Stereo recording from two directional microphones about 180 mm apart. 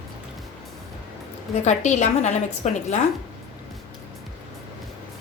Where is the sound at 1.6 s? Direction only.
40° left (ahead or behind).